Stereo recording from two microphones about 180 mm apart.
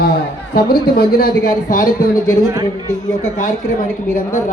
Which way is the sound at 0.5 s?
55° left (ahead or behind).